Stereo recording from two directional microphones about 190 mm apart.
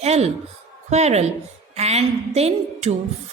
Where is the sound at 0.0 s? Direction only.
35° right (ahead or behind).